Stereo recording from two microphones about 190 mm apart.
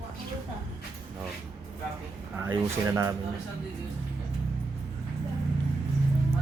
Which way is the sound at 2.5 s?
20° right (ahead or behind).